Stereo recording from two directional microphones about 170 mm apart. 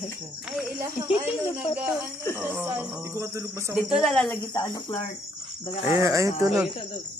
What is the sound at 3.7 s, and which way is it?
Speech, centre (ahead or behind).